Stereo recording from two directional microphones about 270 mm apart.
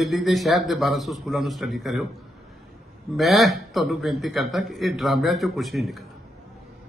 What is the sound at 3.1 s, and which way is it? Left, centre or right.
A man's voice, centre.